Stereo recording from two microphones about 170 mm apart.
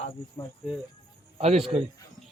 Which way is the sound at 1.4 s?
40° right (ahead or behind).